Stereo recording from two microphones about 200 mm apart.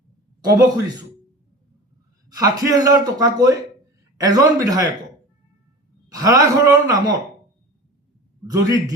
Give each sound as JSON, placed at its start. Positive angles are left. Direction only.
{"t": 0.4, "sound": "speech", "side_deg": -15}
{"t": 2.3, "sound": "a man's voice", "side_deg": -20}
{"t": 6.1, "sound": "a man's voice", "side_deg": -20}
{"t": 8.4, "sound": "speech", "side_deg": -15}